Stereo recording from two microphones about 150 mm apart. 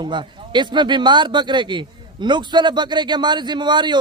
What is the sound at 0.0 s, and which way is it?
A man's voice, 30° right (ahead or behind).